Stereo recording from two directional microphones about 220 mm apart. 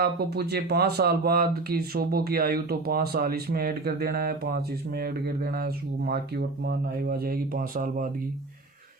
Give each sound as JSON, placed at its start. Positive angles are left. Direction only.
{"t": 0.0, "sound": "speech", "side_deg": -45}